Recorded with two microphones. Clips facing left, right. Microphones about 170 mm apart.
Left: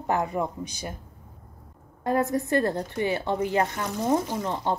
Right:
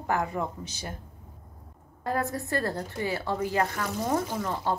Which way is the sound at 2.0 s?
20° left (ahead or behind).